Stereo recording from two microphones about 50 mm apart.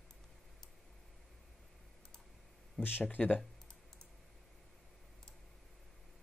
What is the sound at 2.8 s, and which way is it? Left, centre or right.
Speech, left.